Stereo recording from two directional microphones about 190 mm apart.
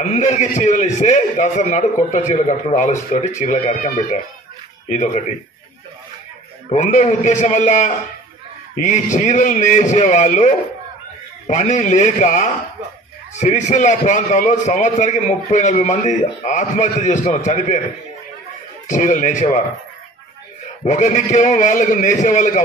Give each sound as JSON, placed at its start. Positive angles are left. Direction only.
{"t": 0.0, "sound": "a man's voice", "side_deg": 40}
{"t": 6.7, "sound": "a man's voice", "side_deg": 40}
{"t": 18.9, "sound": "a man's voice", "side_deg": 40}
{"t": 20.8, "sound": "a man's voice", "side_deg": 40}